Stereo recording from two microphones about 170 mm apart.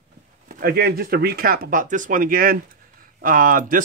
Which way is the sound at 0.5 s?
60° right (ahead or behind).